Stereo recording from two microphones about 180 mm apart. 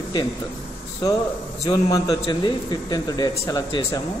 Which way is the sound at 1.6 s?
20° left (ahead or behind).